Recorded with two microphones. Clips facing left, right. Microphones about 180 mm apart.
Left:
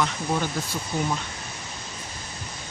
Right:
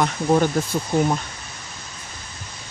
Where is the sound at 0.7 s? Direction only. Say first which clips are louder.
Right 7 dB; 45° right (ahead or behind).